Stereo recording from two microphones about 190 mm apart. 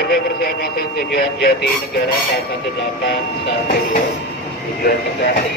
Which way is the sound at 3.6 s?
50° left (ahead or behind).